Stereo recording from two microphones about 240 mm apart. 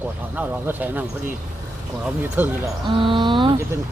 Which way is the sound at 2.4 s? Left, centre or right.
Centre.